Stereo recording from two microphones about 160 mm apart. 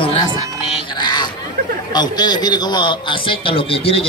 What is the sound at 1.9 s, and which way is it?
A man's voice, 25° left (ahead or behind).